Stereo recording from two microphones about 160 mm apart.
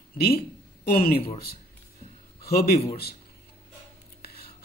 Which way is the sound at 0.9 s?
65° left (ahead or behind).